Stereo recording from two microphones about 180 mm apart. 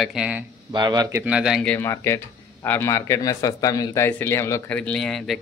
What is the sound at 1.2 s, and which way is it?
Speech, 5° right (ahead or behind).